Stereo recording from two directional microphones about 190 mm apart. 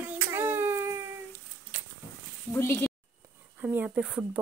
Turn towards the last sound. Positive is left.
turn(degrees=-5)  # may be behind; listen again after turning